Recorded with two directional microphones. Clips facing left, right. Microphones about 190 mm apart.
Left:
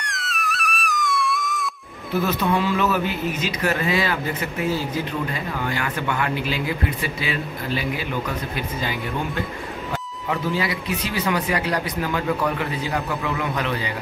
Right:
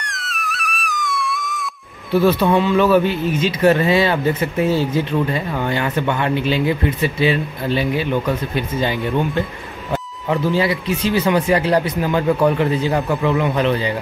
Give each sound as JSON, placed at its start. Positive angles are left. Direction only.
{"t": 0.0, "sound": "music", "side_deg": 0}
{"t": 2.1, "sound": "speech", "side_deg": -30}
{"t": 10.5, "sound": "speech", "side_deg": -30}